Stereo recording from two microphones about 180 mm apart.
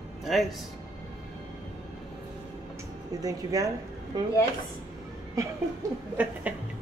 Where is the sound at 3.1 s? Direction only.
20° right (ahead or behind).